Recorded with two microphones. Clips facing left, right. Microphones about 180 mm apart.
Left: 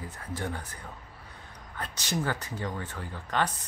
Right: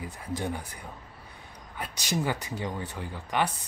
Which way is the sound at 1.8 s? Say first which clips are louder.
Right 1 dB; 15° right (ahead or behind).